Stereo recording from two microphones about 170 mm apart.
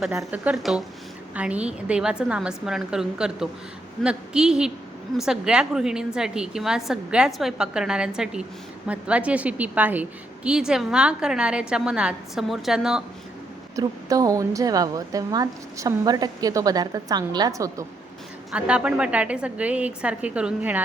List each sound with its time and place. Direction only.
0.0 s a woman's voice: centre (ahead or behind)
13.7 s a woman's voice: 20° right (ahead or behind)
18.5 s a woman's voice: 5° right (ahead or behind)